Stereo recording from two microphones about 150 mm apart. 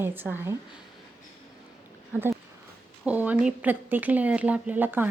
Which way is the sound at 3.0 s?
10° right (ahead or behind).